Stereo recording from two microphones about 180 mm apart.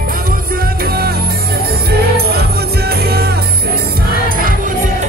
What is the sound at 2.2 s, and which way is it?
Music, 60° right (ahead or behind).